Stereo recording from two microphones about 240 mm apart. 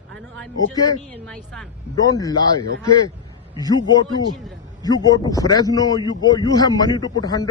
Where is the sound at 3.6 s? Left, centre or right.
Centre.